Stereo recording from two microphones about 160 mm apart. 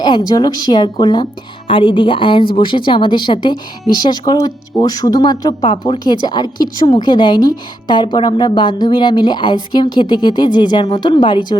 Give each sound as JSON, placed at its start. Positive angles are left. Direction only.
{"t": 0.0, "sound": "a woman's voice", "side_deg": 25}